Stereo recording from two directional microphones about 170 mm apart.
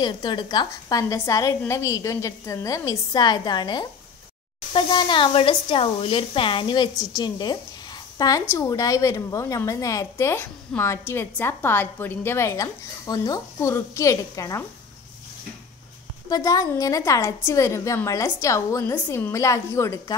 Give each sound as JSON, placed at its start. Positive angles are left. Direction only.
{"t": 0.0, "sound": "a woman's voice", "side_deg": 25}
{"t": 16.3, "sound": "a woman's voice", "side_deg": 20}